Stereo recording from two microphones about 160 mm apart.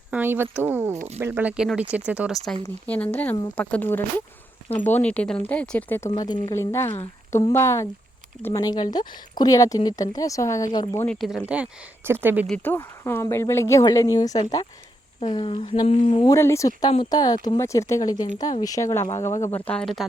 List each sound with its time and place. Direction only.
0.1 s speech: 10° right (ahead or behind)
2.6 s speech: 10° left (ahead or behind)
6.1 s speech: 25° left (ahead or behind)
6.8 s speech: 40° left (ahead or behind)
7.3 s speech: 15° left (ahead or behind)
11.2 s speech: centre (ahead or behind)
12.5 s speech: 15° left (ahead or behind); by 16.3 s 30° left (ahead or behind)
16.3 s speech: 20° left (ahead or behind)